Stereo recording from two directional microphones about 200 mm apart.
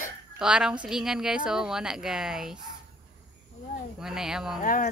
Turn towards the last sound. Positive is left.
turn(degrees=40)  # may be behind; listen again after turning